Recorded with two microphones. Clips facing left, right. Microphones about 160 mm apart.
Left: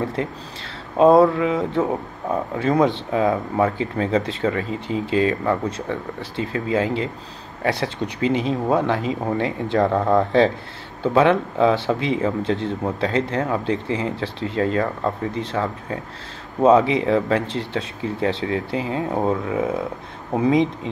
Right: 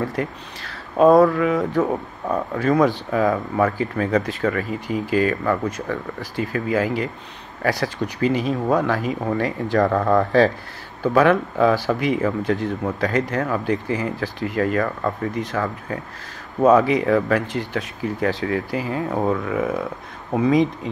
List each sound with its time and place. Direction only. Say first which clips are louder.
0.0 s speech: even; 25° left (ahead or behind)